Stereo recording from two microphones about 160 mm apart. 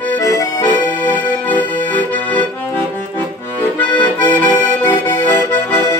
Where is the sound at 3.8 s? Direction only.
10° left (ahead or behind).